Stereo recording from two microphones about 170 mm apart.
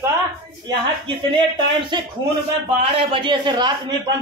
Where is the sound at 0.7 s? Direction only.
30° right (ahead or behind).